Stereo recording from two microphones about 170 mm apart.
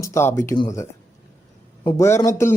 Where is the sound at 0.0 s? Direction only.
15° left (ahead or behind).